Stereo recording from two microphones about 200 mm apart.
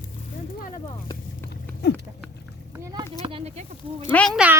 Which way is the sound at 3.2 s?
30° right (ahead or behind).